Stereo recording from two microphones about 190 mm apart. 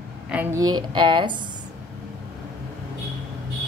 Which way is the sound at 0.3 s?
10° right (ahead or behind).